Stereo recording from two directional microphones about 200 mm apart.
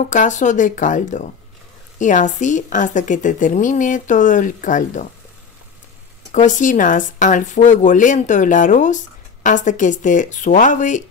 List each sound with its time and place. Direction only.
0.0 s speech: 35° left (ahead or behind)
6.3 s speech: 40° left (ahead or behind)